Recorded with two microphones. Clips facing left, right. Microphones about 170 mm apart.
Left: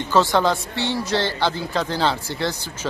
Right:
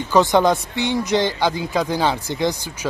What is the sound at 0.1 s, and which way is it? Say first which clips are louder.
Speech: right 3 dB; 15° right (ahead or behind).